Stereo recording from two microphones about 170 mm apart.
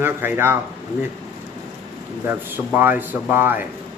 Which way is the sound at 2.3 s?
10° right (ahead or behind).